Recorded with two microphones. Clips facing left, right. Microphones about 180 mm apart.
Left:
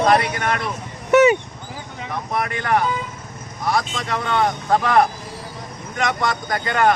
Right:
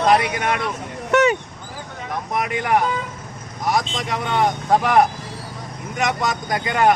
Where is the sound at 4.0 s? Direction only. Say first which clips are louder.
Even; 15° right (ahead or behind).